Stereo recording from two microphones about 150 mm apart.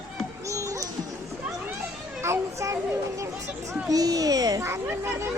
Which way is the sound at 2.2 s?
20° right (ahead or behind).